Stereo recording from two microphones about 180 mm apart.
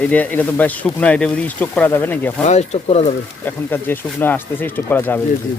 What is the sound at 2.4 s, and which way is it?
Speech, 40° left (ahead or behind).